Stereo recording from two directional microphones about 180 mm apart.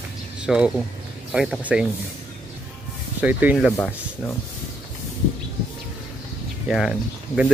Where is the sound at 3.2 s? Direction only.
10° right (ahead or behind).